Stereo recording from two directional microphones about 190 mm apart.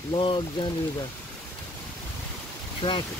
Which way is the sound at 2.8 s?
25° left (ahead or behind).